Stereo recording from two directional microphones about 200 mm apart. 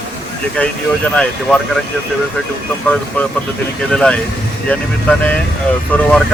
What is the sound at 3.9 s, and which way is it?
Speech, 5° left (ahead or behind).